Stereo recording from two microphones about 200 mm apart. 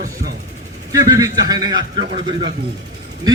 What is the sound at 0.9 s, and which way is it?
A man's voice, 15° right (ahead or behind).